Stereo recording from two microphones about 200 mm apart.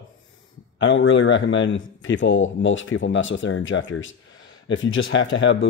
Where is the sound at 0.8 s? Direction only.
70° left (ahead or behind).